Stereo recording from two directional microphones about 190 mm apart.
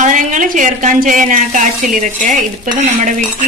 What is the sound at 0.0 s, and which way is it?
A woman's voice, 40° right (ahead or behind).